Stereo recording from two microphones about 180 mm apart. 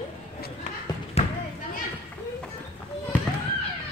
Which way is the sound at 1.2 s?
35° left (ahead or behind).